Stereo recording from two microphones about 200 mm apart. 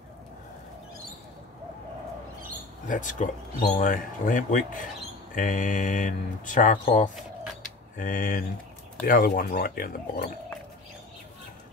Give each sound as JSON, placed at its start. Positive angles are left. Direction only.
{"t": 2.9, "sound": "speech", "side_deg": 40}
{"t": 8.0, "sound": "speech", "side_deg": 45}